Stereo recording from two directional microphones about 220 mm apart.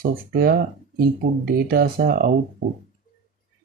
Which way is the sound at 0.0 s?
40° right (ahead or behind).